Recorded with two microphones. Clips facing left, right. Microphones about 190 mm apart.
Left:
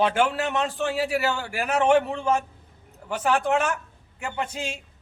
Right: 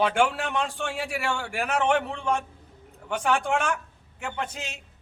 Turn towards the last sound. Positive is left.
turn(degrees=10)  # may be behind; listen again after turning